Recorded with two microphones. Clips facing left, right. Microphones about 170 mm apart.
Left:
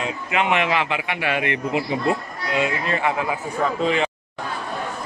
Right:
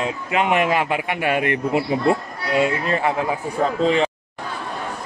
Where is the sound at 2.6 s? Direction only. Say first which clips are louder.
Right 3 dB; 35° right (ahead or behind).